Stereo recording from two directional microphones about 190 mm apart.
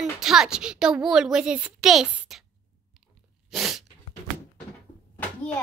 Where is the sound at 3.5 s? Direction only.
Centre (ahead or behind).